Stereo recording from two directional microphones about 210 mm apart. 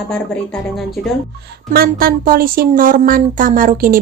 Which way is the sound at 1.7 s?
45° right (ahead or behind).